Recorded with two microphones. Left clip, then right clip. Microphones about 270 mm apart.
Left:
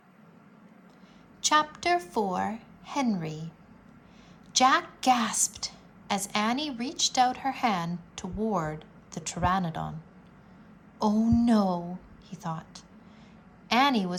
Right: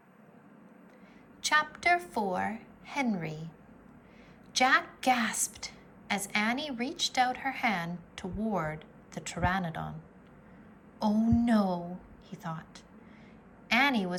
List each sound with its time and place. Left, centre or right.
1.4 s a woman's voice: centre
4.5 s a woman's voice: centre
11.0 s a woman's voice: centre